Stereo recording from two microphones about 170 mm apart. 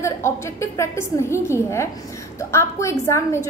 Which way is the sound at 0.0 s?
15° left (ahead or behind).